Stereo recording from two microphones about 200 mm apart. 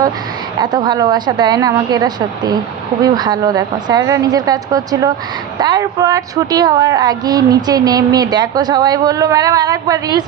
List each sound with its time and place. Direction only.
0.6 s a woman's voice: 20° right (ahead or behind)